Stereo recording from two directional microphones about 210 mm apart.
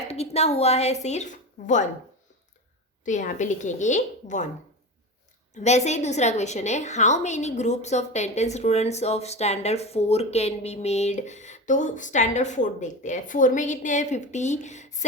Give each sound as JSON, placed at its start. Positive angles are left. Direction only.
{"t": 0.1, "sound": "a woman's voice", "side_deg": 30}
{"t": 3.0, "sound": "a woman's voice", "side_deg": 35}
{"t": 5.5, "sound": "a woman's voice", "side_deg": 35}